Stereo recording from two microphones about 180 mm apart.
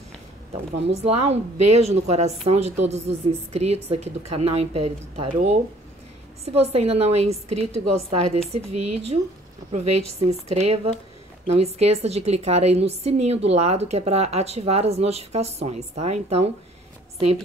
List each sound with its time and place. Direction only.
1.0 s a woman's voice: 35° right (ahead or behind)
10.2 s a woman's voice: 35° right (ahead or behind)